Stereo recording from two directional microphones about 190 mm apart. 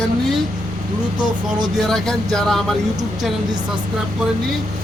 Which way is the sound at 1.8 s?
5° left (ahead or behind).